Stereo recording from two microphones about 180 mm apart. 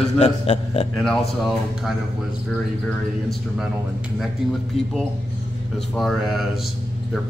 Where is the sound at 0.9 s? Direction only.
Centre (ahead or behind).